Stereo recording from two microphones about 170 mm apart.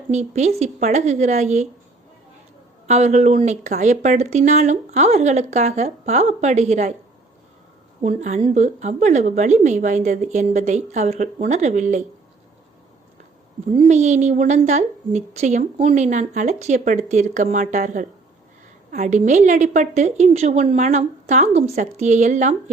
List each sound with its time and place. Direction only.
0.1 s a woman's voice: 40° right (ahead or behind)
2.8 s speech: 40° right (ahead or behind)
8.0 s a woman's voice: 45° right (ahead or behind)
13.8 s a woman's voice: 45° right (ahead or behind)